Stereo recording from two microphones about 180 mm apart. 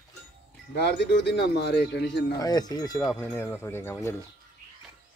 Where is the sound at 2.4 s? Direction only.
20° left (ahead or behind).